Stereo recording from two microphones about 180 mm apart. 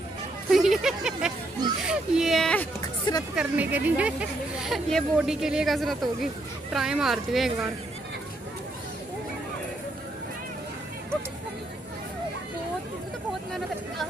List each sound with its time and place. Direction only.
0.5 s a sound: centre (ahead or behind)
1.9 s speech: centre (ahead or behind)
2.8 s hubbub: 20° left (ahead or behind)
3.3 s speech: 10° right (ahead or behind)